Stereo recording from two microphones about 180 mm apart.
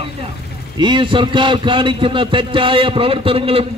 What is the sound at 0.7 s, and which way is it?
A man's voice, 25° right (ahead or behind).